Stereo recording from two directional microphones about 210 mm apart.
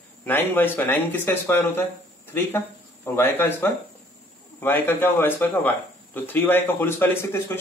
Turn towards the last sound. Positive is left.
turn(degrees=10)  # may be behind; listen again after turning